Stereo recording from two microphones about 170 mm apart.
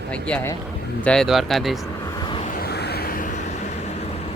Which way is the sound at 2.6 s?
70° left (ahead or behind).